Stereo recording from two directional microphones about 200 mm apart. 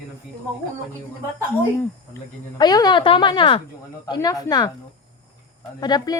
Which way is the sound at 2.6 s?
20° left (ahead or behind).